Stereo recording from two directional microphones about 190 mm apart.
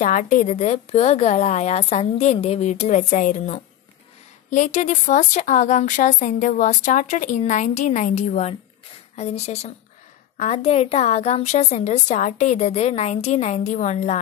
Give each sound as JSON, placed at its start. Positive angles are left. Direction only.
{"t": 0.0, "sound": "a woman's voice", "side_deg": 40}
{"t": 4.6, "sound": "a woman's voice", "side_deg": 40}